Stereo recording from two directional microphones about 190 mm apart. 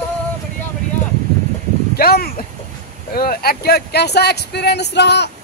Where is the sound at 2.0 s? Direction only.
50° left (ahead or behind).